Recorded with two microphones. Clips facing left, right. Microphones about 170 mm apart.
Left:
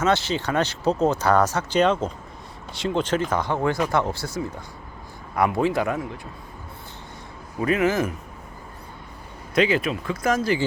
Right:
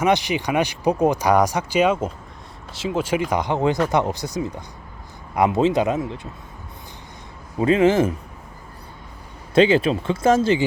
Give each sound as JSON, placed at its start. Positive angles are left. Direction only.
{"t": 0.0, "sound": "speech", "side_deg": -15}
{"t": 7.6, "sound": "speech", "side_deg": -25}
{"t": 9.6, "sound": "speech", "side_deg": -30}